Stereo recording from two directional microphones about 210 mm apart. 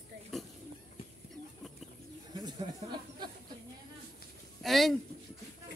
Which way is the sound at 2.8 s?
25° right (ahead or behind).